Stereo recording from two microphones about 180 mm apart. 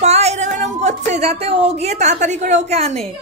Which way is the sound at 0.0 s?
35° right (ahead or behind).